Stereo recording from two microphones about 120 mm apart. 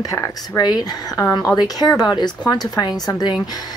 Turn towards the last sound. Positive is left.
turn(degrees=35)  # may be behind; listen again after turning